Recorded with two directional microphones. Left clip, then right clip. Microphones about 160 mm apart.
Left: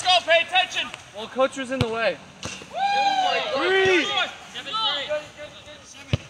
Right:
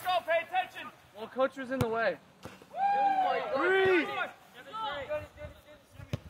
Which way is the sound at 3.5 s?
35° left (ahead or behind).